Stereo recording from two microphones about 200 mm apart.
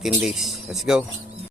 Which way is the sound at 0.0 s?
5° right (ahead or behind).